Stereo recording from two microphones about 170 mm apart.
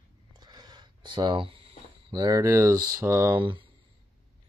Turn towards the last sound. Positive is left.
turn(degrees=-25)  # may be behind; listen again after turning